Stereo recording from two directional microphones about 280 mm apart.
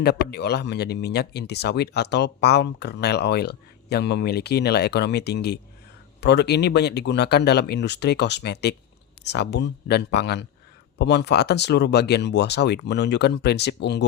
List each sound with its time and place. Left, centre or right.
0.0 s speech: left